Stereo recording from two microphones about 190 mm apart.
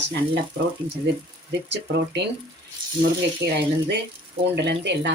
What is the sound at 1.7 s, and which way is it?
Speech, 65° right (ahead or behind).